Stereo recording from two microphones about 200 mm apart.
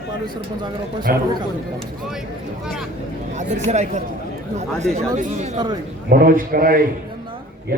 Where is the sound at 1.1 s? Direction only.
50° right (ahead or behind).